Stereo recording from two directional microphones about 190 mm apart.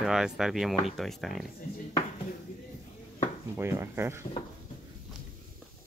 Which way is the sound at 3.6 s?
15° right (ahead or behind).